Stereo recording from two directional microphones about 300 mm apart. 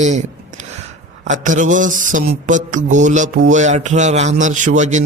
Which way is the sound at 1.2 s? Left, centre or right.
Right.